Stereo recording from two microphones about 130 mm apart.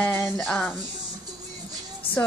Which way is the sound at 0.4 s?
10° left (ahead or behind).